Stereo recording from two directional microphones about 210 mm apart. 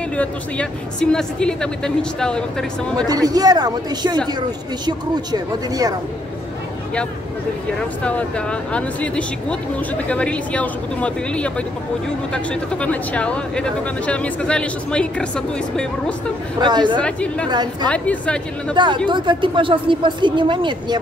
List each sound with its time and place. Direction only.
0.1 s speech: 5° left (ahead or behind)
3.1 s speech: 15° right (ahead or behind)
8.0 s speech: 5° left (ahead or behind)
12.7 s speech: 5° left (ahead or behind)
16.6 s speech: 20° right (ahead or behind)
17.0 s speech: 5° left (ahead or behind)
19.0 s speech: 20° right (ahead or behind)